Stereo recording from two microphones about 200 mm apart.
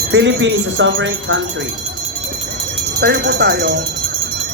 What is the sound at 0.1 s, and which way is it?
Speech, 60° right (ahead or behind).